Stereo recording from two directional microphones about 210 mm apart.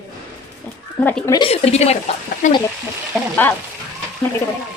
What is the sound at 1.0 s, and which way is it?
Speech, 10° left (ahead or behind).